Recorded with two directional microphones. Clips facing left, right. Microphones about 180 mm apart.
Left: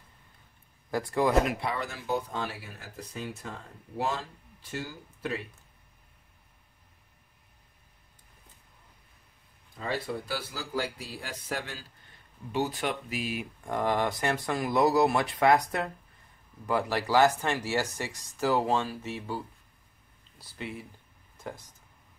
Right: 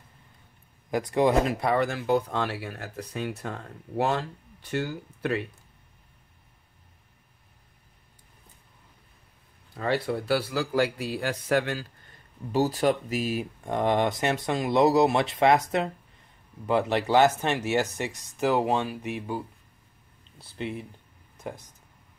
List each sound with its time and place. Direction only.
0.8 s speech: 20° right (ahead or behind)
1.7 s speech: 60° right (ahead or behind)
9.8 s speech: 70° right (ahead or behind)
12.5 s speech: 40° right (ahead or behind)
13.7 s speech: 20° right (ahead or behind)
20.5 s speech: 20° right (ahead or behind)